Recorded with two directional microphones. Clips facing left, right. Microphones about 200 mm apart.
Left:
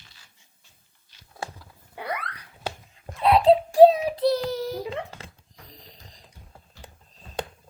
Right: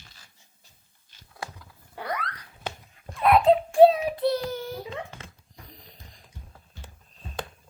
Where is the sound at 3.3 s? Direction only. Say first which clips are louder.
Left 2 dB; 35° left (ahead or behind).